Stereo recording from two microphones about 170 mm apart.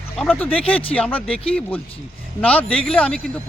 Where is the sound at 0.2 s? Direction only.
10° left (ahead or behind).